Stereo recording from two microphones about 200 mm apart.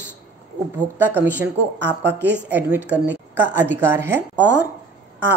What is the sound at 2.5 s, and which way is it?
A woman's voice, 10° right (ahead or behind).